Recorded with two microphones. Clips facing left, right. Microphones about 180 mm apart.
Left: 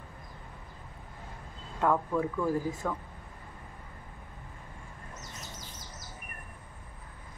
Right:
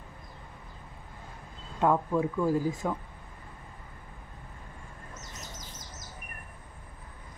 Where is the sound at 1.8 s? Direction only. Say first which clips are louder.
Right 2 dB; 15° right (ahead or behind).